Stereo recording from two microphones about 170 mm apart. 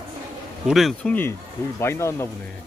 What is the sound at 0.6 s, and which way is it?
Speech, centre (ahead or behind).